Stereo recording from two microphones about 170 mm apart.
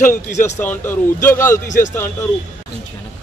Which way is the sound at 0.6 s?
15° left (ahead or behind).